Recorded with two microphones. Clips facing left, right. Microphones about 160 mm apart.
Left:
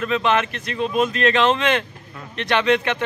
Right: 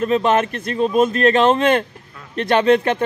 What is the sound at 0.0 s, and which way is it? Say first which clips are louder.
Speech: right 4 dB; 40° right (ahead or behind).